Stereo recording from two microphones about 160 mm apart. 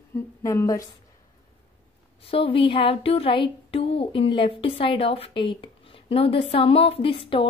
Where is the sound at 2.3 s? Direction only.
35° left (ahead or behind).